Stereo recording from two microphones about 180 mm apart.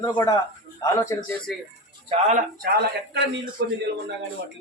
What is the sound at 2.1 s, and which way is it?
Speech, 35° right (ahead or behind).